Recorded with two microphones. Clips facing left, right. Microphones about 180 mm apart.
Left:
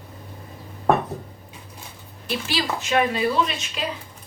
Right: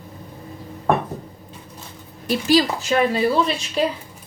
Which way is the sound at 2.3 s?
40° right (ahead or behind).